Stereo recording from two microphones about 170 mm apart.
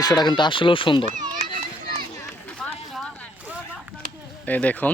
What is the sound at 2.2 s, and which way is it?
Run, 5° left (ahead or behind).